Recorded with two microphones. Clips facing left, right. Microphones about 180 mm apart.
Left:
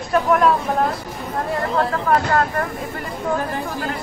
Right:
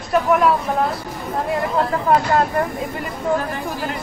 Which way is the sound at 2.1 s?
20° right (ahead or behind).